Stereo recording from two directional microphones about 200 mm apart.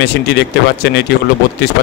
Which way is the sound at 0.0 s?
55° left (ahead or behind).